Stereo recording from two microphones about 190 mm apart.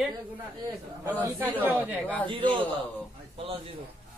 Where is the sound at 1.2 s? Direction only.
10° right (ahead or behind).